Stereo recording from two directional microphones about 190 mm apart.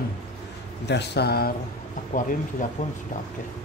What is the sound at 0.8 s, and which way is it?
Speech, 60° left (ahead or behind).